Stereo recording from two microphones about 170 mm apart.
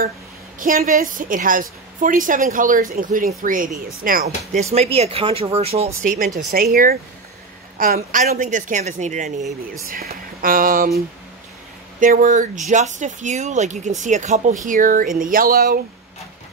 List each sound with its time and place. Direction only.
0.6 s speech: 50° right (ahead or behind)
4.6 s speech: 40° right (ahead or behind)
6.0 s speech: 55° right (ahead or behind)
9.8 s speech: 55° right (ahead or behind)
12.0 s speech: 50° right (ahead or behind)